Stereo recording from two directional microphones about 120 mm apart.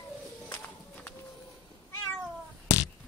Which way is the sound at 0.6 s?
10° left (ahead or behind).